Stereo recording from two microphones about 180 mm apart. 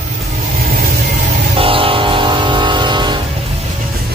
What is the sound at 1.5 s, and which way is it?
Train, 30° right (ahead or behind).